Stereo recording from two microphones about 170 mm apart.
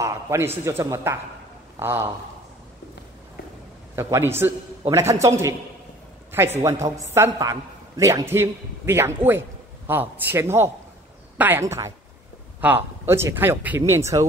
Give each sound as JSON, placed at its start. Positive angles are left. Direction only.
{"t": 0.0, "sound": "speech", "side_deg": -15}
{"t": 3.9, "sound": "a woman's voice", "side_deg": -15}